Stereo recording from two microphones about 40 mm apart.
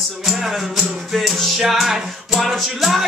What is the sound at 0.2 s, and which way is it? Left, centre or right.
Music, centre.